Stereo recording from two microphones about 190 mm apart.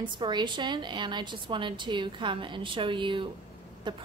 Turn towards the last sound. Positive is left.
turn(degrees=-25)  # may be behind; listen again after turning